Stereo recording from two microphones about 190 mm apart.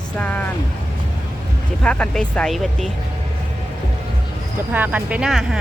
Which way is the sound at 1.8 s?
5° left (ahead or behind).